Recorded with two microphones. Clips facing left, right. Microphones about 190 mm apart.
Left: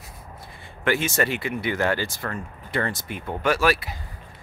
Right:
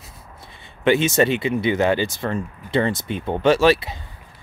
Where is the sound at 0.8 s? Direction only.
20° right (ahead or behind).